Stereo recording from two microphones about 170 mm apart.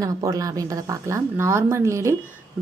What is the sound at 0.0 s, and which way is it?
A woman's voice, 20° right (ahead or behind).